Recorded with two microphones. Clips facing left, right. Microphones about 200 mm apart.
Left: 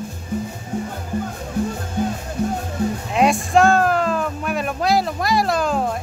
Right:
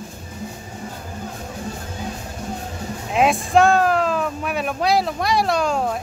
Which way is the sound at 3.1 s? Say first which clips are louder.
Even; centre (ahead or behind).